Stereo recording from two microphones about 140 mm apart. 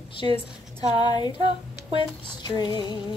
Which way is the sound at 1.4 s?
40° right (ahead or behind).